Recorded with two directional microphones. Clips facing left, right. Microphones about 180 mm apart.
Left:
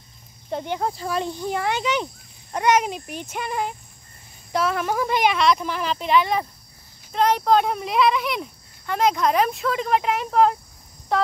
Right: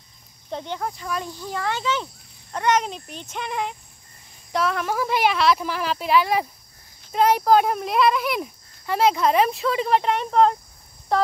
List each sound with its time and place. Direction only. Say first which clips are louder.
0.5 s speech: left 3 dB; 5° left (ahead or behind)
0.7 s a child's voice: left 4 dB; 30° left (ahead or behind); by 11.2 s centre (ahead or behind)